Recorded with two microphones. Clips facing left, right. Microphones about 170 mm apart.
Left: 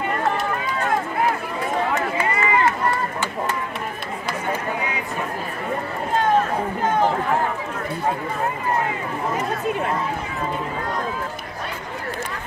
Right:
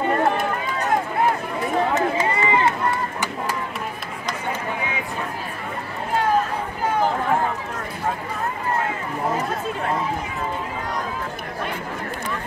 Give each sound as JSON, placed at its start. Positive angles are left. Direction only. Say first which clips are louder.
{"t": 2.0, "sound": "run", "louder": "right 2 dB", "side_deg": -20}